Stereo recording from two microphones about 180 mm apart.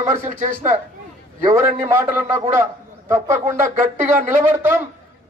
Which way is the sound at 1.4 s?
15° right (ahead or behind).